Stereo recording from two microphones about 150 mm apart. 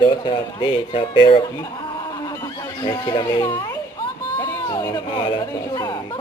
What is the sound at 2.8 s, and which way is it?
Speech, 25° left (ahead or behind).